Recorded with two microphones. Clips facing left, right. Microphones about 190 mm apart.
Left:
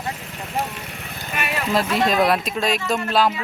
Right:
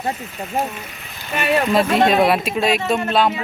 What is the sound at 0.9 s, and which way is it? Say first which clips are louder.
Vehicle: left 3 dB; 55° left (ahead or behind).